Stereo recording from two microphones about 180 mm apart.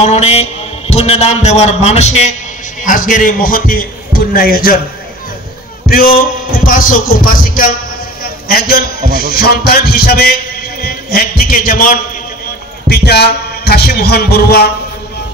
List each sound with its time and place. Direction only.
0.0 s a man's voice: 35° left (ahead or behind); by 4.7 s 55° left (ahead or behind)
5.9 s speech: 55° left (ahead or behind)
8.2 s a sound: 55° left (ahead or behind)
9.1 s a man's voice: 60° left (ahead or behind)
12.8 s a man's voice: 65° left (ahead or behind)